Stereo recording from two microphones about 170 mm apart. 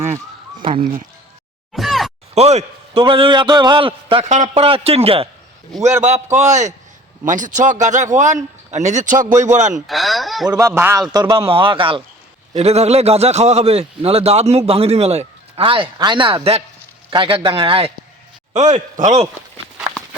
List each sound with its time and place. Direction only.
0.7 s speech: 55° right (ahead or behind)
1.7 s a sound: centre (ahead or behind)
2.3 s a man's voice: 40° right (ahead or behind)
9.8 s a man's voice: centre (ahead or behind)
10.6 s speech: 15° right (ahead or behind)
11.3 s a man's voice: 35° right (ahead or behind)
18.5 s speech: 45° right (ahead or behind)